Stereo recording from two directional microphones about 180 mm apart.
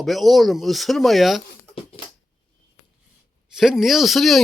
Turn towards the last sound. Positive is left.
turn(degrees=0)  # may be behind; listen again after turning